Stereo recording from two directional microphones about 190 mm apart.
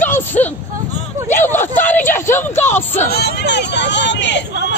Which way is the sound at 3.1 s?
60° left (ahead or behind).